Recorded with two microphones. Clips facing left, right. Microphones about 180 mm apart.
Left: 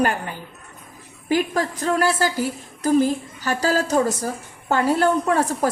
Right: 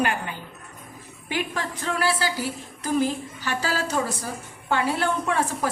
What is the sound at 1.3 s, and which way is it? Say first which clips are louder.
A woman's voice: left 8 dB; 40° left (ahead or behind).